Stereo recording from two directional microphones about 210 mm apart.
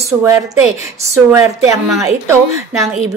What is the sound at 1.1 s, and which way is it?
Speech, 15° right (ahead or behind).